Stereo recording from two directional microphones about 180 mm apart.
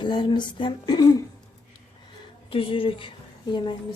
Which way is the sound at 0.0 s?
25° left (ahead or behind).